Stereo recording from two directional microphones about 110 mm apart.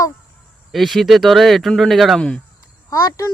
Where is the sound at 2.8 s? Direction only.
30° left (ahead or behind).